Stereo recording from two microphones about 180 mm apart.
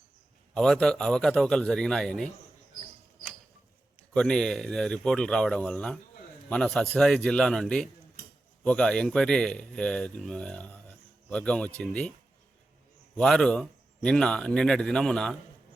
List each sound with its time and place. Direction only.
0.5 s speech: 5° left (ahead or behind)
4.1 s speech: 5° left (ahead or behind)
13.1 s speech: 5° left (ahead or behind)